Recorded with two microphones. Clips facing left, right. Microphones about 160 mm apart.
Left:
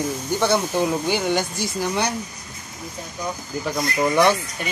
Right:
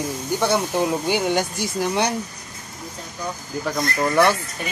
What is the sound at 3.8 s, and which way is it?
Speech, 15° left (ahead or behind).